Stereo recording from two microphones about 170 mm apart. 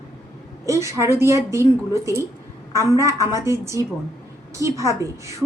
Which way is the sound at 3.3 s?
15° right (ahead or behind).